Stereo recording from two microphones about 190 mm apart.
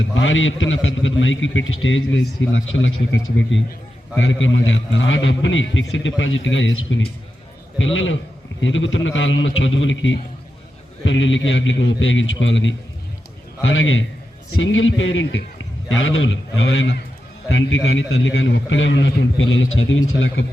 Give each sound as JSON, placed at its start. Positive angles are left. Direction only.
{"t": 0.0, "sound": "a man's voice", "side_deg": 90}
{"t": 4.2, "sound": "a man's voice", "side_deg": 90}
{"t": 7.8, "sound": "a man's voice", "side_deg": 90}
{"t": 17.8, "sound": "a man's voice", "side_deg": 90}